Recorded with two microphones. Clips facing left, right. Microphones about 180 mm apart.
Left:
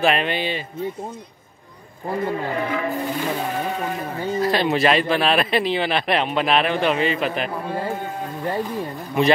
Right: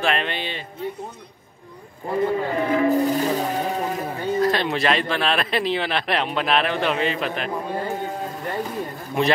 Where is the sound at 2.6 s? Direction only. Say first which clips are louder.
Right 6 dB; 40° right (ahead or behind).